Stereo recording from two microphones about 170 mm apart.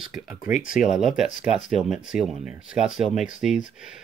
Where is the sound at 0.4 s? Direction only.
50° left (ahead or behind).